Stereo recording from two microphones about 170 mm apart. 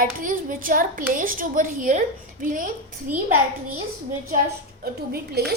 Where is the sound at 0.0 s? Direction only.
55° right (ahead or behind).